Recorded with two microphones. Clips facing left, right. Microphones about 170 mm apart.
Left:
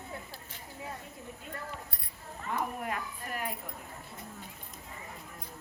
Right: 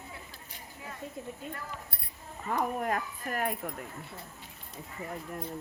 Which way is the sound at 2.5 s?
45° right (ahead or behind).